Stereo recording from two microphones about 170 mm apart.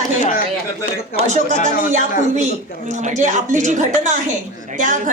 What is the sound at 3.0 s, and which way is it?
A woman's voice, 45° right (ahead or behind).